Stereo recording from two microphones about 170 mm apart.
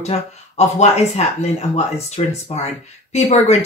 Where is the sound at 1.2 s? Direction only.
40° left (ahead or behind).